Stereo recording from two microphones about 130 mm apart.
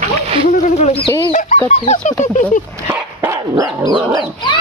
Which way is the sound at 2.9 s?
20° right (ahead or behind).